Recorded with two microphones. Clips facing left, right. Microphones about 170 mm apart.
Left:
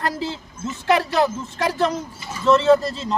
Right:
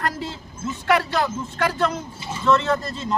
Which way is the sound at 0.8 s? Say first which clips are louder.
Left 3 dB; 25° left (ahead or behind).